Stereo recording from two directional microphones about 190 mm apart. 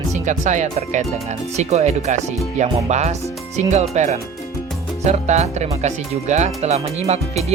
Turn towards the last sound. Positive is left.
turn(degrees=-35)  # may be behind; listen again after turning